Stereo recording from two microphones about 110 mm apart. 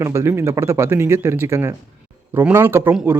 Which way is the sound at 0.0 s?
25° right (ahead or behind).